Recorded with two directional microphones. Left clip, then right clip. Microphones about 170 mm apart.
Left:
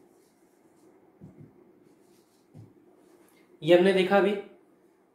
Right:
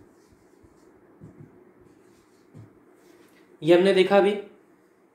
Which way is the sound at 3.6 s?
25° right (ahead or behind).